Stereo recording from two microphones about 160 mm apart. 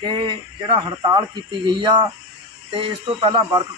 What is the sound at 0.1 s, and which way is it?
Speech, 30° right (ahead or behind).